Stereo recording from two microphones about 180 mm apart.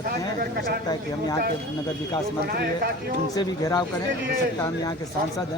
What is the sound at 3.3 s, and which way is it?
Speech, 20° left (ahead or behind).